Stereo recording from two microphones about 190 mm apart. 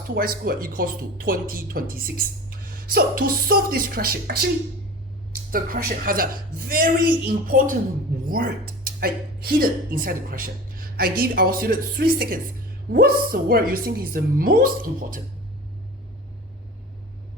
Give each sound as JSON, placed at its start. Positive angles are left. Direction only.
{"t": 0.1, "sound": "speech", "side_deg": -50}